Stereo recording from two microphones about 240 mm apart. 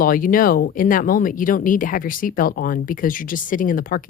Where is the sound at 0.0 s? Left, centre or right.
Left.